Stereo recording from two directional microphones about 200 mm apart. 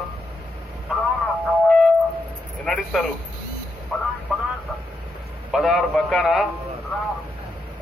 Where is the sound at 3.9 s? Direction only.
5° right (ahead or behind).